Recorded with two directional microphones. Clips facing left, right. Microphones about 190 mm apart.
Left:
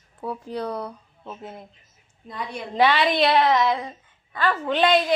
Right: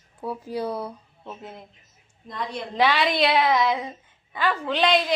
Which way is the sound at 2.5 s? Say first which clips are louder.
Left 2 dB; centre (ahead or behind).